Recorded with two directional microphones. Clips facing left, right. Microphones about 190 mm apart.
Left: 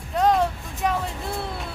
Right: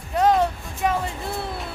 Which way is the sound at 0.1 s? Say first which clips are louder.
Right 1 dB; centre (ahead or behind).